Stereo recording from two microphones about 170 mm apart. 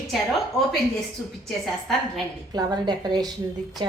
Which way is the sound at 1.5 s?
Centre (ahead or behind).